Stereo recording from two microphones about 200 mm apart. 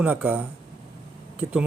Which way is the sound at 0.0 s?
10° right (ahead or behind).